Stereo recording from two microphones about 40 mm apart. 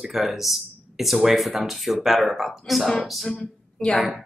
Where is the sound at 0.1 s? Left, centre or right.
Centre.